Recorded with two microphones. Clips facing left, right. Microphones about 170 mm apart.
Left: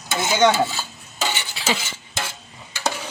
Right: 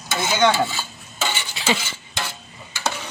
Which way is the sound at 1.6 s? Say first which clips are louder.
Right 2 dB; centre (ahead or behind).